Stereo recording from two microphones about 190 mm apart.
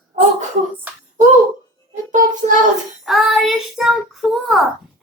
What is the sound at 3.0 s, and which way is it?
Child singing, centre (ahead or behind).